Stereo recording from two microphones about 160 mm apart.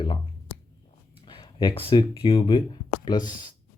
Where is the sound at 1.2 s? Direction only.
30° left (ahead or behind).